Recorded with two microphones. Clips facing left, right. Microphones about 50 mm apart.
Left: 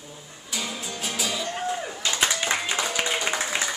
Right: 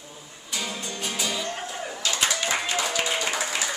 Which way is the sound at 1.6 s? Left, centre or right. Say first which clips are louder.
Left 2 dB; left.